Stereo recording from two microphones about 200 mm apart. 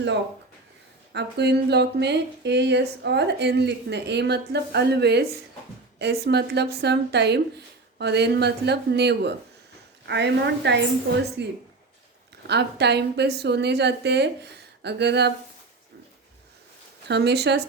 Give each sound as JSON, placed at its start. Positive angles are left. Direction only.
{"t": 1.1, "sound": "speech", "side_deg": -55}
{"t": 12.5, "sound": "speech", "side_deg": -55}
{"t": 17.1, "sound": "speech", "side_deg": -60}